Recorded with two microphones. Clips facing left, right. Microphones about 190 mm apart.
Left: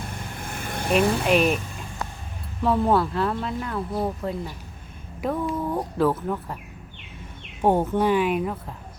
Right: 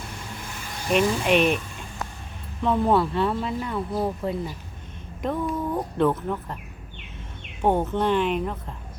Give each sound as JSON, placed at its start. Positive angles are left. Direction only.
{"t": 0.4, "sound": "vehicle", "side_deg": 55}
{"t": 1.2, "sound": "speech", "side_deg": 0}
{"t": 2.6, "sound": "speech", "side_deg": 5}
{"t": 7.6, "sound": "speech", "side_deg": 10}